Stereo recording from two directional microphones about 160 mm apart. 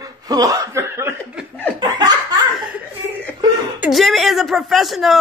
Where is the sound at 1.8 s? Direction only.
25° right (ahead or behind).